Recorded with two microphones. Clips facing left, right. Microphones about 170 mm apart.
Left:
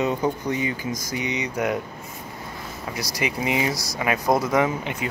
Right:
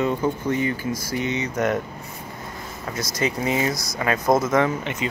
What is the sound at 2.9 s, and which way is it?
Speech, 15° left (ahead or behind).